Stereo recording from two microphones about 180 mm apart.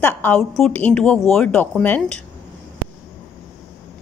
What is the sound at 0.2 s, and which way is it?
A woman's voice, 5° left (ahead or behind).